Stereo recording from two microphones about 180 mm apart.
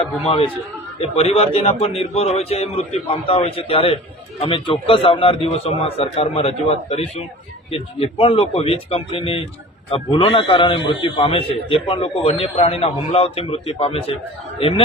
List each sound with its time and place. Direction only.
0.0 s a man's voice: 30° left (ahead or behind)